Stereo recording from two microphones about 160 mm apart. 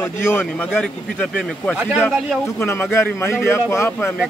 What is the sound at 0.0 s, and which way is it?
A man's voice, 15° left (ahead or behind).